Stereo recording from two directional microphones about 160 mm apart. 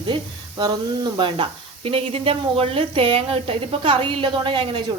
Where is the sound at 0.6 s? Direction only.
25° right (ahead or behind).